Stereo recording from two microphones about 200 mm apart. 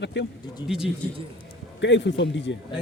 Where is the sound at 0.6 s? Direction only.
5° right (ahead or behind).